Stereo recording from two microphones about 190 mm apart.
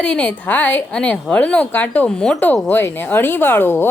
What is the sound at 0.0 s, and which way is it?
A woman's voice, 5° left (ahead or behind).